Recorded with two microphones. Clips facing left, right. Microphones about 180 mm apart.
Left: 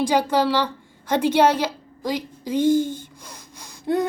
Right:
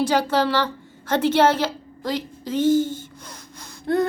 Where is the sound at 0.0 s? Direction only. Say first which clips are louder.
Even; 15° left (ahead or behind).